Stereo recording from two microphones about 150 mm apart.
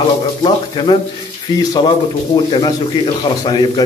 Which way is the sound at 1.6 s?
30° left (ahead or behind).